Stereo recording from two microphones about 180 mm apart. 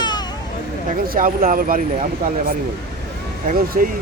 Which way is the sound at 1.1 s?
50° right (ahead or behind).